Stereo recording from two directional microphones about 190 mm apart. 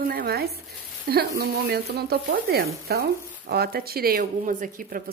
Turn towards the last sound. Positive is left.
turn(degrees=-45)  # may be behind; listen again after turning